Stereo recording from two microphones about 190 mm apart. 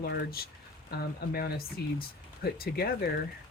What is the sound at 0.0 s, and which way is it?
Speech, 55° left (ahead or behind).